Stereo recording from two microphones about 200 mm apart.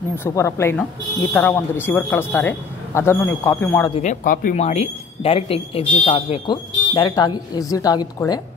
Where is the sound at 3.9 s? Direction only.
40° left (ahead or behind); by 8.4 s 20° left (ahead or behind).